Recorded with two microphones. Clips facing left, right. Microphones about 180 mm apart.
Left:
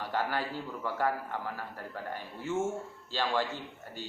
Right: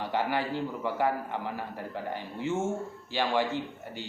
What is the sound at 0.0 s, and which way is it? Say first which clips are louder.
Speech: right 3 dB; 20° right (ahead or behind).